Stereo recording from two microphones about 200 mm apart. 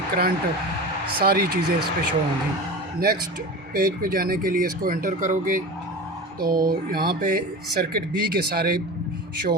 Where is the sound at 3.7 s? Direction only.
45° right (ahead or behind).